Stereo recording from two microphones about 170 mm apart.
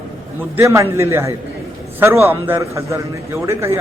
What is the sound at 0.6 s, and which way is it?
A man's voice, 15° right (ahead or behind).